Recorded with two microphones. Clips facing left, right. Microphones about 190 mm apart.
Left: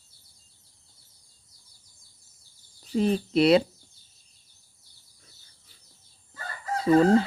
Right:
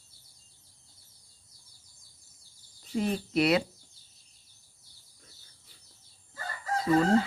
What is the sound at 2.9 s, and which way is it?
Speech, 30° left (ahead or behind).